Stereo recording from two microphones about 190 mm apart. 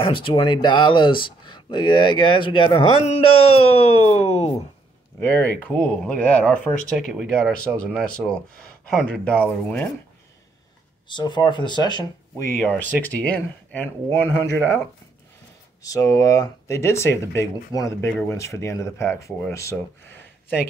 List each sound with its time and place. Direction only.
0.0 s speech: 25° left (ahead or behind)
5.2 s speech: 10° left (ahead or behind)
11.1 s speech: 25° left (ahead or behind)
15.8 s speech: 20° left (ahead or behind)